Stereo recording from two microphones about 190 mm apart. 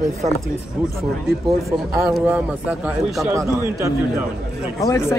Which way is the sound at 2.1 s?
5° right (ahead or behind).